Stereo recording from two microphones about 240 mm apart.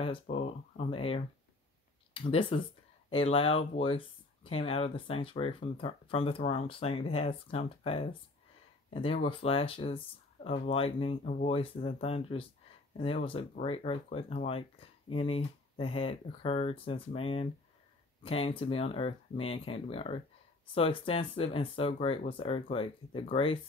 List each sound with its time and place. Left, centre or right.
0.0 s speech: left